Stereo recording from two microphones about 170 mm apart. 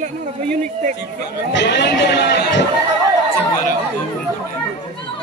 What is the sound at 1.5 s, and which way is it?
Speech, 90° left.